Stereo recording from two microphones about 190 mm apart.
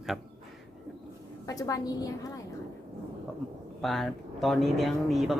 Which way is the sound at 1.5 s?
20° left (ahead or behind).